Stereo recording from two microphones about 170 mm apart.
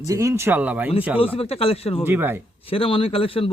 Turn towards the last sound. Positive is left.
turn(degrees=35)  # may be behind; listen again after turning